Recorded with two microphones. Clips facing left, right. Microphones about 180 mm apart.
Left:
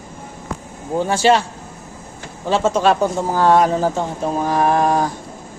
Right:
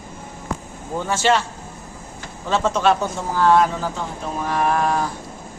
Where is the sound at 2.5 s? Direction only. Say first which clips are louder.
Left 3 dB; 30° left (ahead or behind).